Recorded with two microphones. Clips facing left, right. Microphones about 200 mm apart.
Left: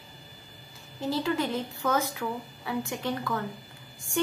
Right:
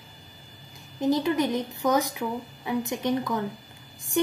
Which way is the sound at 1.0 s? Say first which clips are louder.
Right 5 dB; 15° right (ahead or behind).